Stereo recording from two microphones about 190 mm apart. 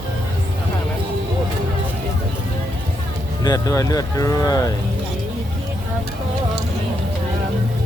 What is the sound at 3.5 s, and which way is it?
Speech, 15° left (ahead or behind).